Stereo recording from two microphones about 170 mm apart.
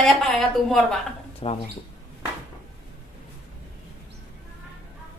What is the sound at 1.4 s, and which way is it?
Speech, 35° left (ahead or behind).